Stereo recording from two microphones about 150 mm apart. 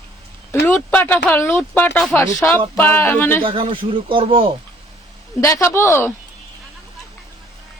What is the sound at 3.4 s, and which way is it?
Speech, 35° right (ahead or behind).